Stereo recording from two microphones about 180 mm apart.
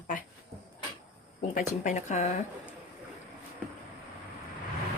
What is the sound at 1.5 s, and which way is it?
Speech, 45° left (ahead or behind).